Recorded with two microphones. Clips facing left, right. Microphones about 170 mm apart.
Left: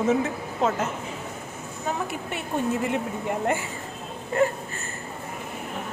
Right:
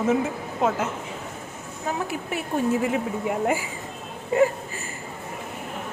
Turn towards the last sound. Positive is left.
turn(degrees=-15)  # may be behind; listen again after turning